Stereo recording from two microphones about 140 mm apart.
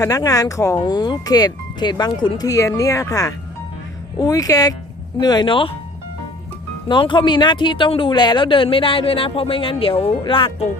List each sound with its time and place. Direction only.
0.0 s speech: 25° left (ahead or behind)
6.8 s speech: 35° left (ahead or behind)